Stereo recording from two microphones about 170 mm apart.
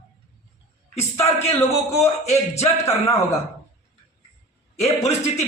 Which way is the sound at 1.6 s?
35° left (ahead or behind).